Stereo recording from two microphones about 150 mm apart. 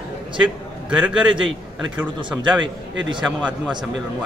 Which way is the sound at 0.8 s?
5° right (ahead or behind).